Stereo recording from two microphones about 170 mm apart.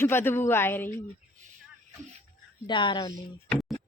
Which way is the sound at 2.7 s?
30° left (ahead or behind).